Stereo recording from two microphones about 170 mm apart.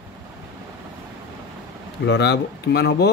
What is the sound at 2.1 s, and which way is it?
Speech, 75° left (ahead or behind).